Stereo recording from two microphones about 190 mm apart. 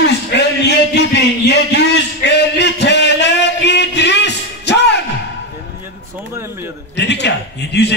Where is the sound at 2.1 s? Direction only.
60° left (ahead or behind).